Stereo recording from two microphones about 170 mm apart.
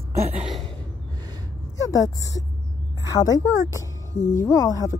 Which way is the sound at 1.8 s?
20° left (ahead or behind).